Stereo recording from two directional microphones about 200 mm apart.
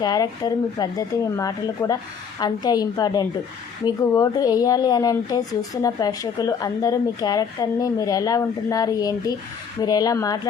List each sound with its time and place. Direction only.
0.0 s speech: 20° left (ahead or behind)